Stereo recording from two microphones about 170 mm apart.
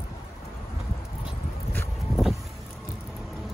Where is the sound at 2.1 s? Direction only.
Centre (ahead or behind).